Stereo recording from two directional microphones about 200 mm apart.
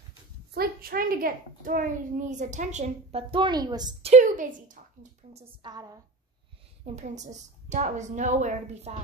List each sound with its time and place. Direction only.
0.6 s a child's voice: 50° right (ahead or behind); by 4.1 s 20° right (ahead or behind)
4.1 s a woman's voice: 40° right (ahead or behind)
5.3 s a woman's voice: 20° right (ahead or behind)
6.8 s a child's voice: 35° right (ahead or behind)